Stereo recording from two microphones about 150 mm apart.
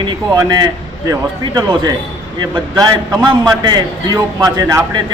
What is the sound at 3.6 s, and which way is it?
A man's voice, 25° right (ahead or behind).